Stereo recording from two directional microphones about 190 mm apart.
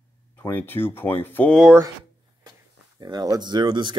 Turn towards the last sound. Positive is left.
turn(degrees=-25)  # may be behind; listen again after turning